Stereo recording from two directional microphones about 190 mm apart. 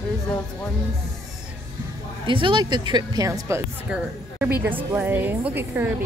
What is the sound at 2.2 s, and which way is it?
Speech, 25° right (ahead or behind).